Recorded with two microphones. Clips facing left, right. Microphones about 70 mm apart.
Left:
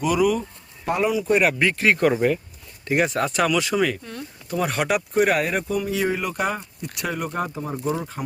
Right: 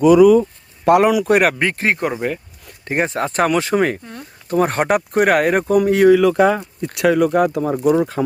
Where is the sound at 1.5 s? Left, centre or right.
Right.